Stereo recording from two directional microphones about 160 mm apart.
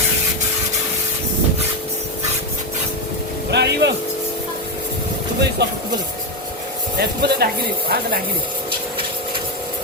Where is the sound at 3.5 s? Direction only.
90° right.